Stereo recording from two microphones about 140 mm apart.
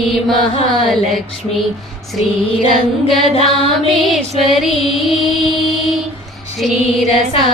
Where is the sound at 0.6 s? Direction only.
Centre (ahead or behind).